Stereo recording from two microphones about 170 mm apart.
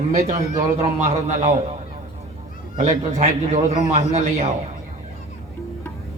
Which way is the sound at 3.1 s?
40° right (ahead or behind).